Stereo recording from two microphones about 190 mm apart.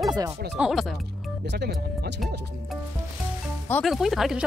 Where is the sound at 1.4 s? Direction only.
60° right (ahead or behind).